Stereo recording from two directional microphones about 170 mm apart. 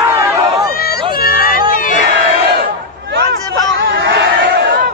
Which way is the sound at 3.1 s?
80° right.